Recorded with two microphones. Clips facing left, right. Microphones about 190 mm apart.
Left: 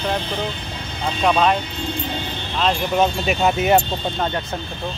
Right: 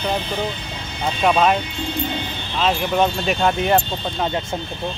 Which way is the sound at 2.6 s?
Centre (ahead or behind).